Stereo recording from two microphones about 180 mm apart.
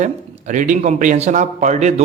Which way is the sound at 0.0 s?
45° right (ahead or behind).